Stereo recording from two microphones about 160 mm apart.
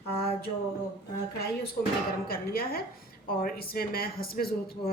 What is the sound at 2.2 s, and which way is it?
A woman's voice, 70° left (ahead or behind).